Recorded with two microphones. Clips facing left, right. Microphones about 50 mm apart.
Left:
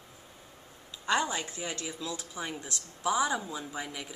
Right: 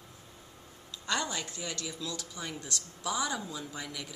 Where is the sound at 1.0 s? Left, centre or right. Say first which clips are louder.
Left 4 dB; centre.